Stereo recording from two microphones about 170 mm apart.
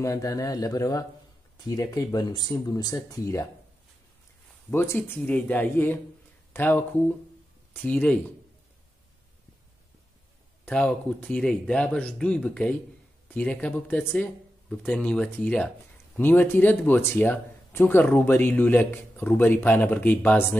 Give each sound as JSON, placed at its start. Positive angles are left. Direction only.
{"t": 0.0, "sound": "speech", "side_deg": 20}
{"t": 4.6, "sound": "speech", "side_deg": 15}
{"t": 7.8, "sound": "speech", "side_deg": 10}
{"t": 10.6, "sound": "speech", "side_deg": 5}